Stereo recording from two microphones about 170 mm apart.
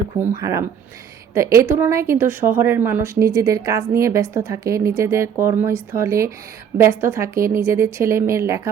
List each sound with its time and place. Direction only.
0.3 s a woman's voice: 20° right (ahead or behind)